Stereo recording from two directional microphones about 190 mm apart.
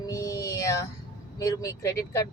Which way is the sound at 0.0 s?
15° left (ahead or behind).